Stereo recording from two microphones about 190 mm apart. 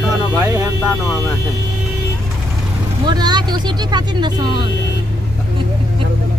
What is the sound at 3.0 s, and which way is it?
Speech, 20° right (ahead or behind).